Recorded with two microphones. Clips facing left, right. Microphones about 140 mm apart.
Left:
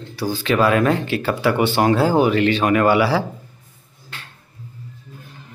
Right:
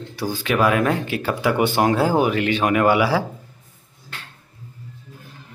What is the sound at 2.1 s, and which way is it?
Speech, 10° right (ahead or behind).